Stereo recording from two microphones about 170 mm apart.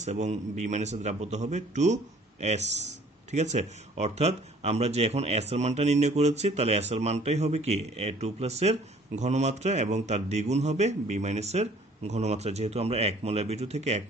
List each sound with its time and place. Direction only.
0.0 s a man's voice: 45° right (ahead or behind)